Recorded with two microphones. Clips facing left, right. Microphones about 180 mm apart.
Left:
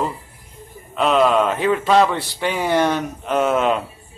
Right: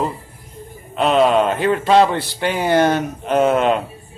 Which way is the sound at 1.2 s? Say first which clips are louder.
Right 2 dB; 35° right (ahead or behind).